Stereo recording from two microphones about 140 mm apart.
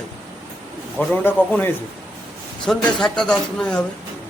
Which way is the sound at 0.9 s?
10° left (ahead or behind).